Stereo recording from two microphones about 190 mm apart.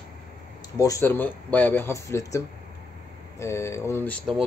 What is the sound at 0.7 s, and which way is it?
Speech, 15° left (ahead or behind).